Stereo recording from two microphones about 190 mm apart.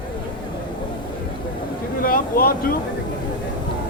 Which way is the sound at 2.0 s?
50° left (ahead or behind).